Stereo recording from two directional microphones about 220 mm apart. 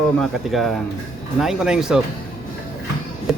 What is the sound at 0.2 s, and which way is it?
Speech, centre (ahead or behind).